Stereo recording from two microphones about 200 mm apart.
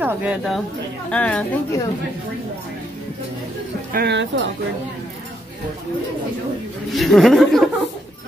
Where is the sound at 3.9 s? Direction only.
60° right (ahead or behind).